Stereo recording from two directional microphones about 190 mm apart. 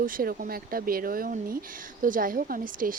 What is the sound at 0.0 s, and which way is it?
Speech, 50° right (ahead or behind).